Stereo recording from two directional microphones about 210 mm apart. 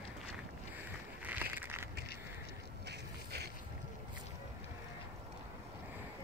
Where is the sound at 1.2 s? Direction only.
10° right (ahead or behind).